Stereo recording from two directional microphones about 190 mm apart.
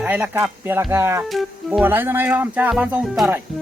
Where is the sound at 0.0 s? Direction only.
10° right (ahead or behind).